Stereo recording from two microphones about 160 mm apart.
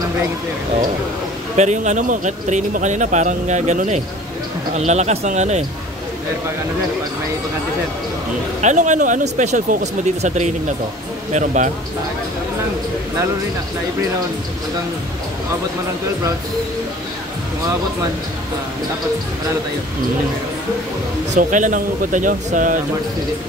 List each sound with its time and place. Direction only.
1.6 s speech: 45° right (ahead or behind)
8.5 s speech: 45° right (ahead or behind)
21.4 s speech: 50° right (ahead or behind)